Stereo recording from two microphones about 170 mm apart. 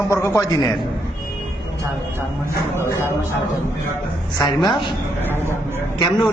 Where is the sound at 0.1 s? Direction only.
15° left (ahead or behind).